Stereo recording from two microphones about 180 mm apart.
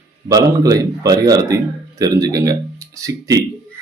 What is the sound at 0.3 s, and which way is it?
A man's voice, 20° right (ahead or behind).